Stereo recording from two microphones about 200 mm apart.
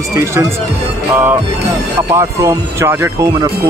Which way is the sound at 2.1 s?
15° right (ahead or behind).